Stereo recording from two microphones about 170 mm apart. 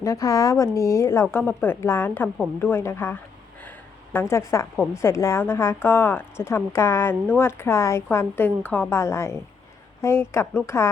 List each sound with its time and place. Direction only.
0.0 s speech: 20° left (ahead or behind)